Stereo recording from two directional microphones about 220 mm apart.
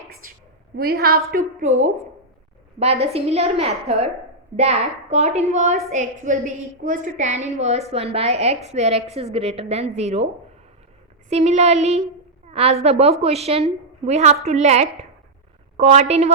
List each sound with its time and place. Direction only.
0.2 s a woman's voice: 40° right (ahead or behind)
11.3 s a woman's voice: 30° right (ahead or behind)